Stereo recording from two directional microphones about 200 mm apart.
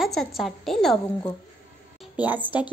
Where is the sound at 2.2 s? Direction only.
10° right (ahead or behind).